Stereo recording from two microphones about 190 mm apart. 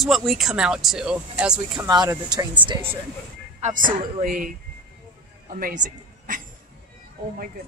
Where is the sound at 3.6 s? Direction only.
45° right (ahead or behind).